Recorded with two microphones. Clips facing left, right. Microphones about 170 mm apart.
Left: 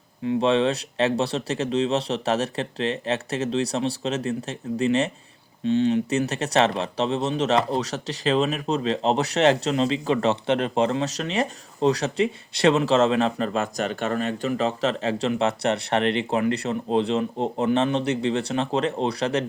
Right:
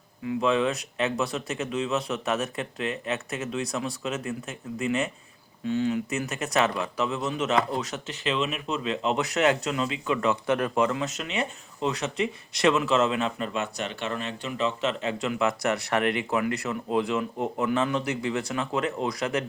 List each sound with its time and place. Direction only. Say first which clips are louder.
0.3 s speech: left 4 dB; 30° left (ahead or behind)